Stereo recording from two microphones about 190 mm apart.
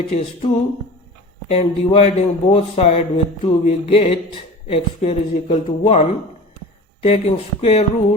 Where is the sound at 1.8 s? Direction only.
30° left (ahead or behind).